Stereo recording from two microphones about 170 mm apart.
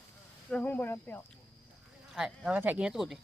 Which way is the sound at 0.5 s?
10° left (ahead or behind).